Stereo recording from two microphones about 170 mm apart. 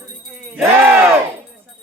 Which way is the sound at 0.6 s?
10° right (ahead or behind).